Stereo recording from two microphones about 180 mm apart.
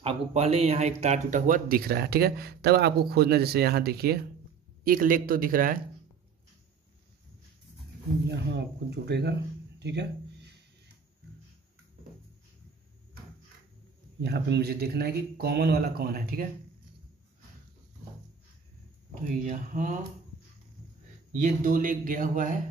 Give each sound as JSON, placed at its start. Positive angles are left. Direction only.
{"t": 0.0, "sound": "speech", "side_deg": -35}
{"t": 4.8, "sound": "speech", "side_deg": -50}
{"t": 8.3, "sound": "speech", "side_deg": -70}
{"t": 14.2, "sound": "speech", "side_deg": -65}
{"t": 19.4, "sound": "speech", "side_deg": -45}
{"t": 21.4, "sound": "speech", "side_deg": -50}